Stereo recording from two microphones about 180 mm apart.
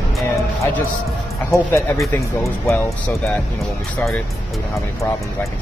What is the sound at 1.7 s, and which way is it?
Speech, 15° left (ahead or behind).